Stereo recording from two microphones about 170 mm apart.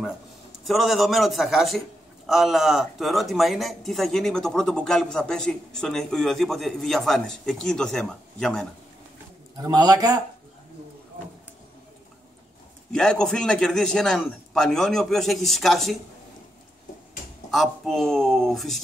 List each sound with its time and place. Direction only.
0.7 s speech: centre (ahead or behind)
9.6 s speech: 20° right (ahead or behind)
12.9 s speech: 5° left (ahead or behind)
17.5 s speech: centre (ahead or behind)